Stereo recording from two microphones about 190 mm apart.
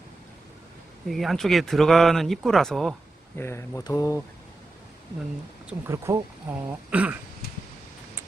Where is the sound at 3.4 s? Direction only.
15° left (ahead or behind).